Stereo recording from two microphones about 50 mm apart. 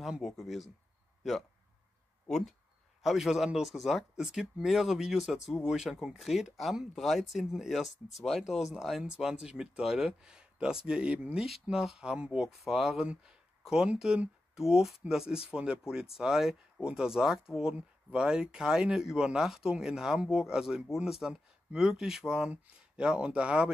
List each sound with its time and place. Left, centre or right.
0.2 s speech: centre
2.2 s speech: centre
3.0 s speech: centre
10.2 s speech: centre
11.7 s speech: centre
12.0 s speech: centre
12.4 s speech: centre
13.2 s a sound: centre
13.9 s speech: centre